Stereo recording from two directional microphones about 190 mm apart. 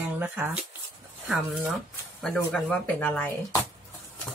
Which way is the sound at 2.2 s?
5° left (ahead or behind).